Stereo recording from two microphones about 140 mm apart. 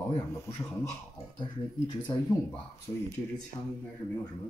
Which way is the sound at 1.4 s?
35° left (ahead or behind).